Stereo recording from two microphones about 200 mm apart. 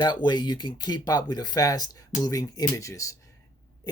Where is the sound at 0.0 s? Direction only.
20° left (ahead or behind).